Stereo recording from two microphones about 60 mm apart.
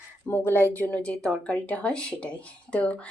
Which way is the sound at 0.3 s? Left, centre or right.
Left.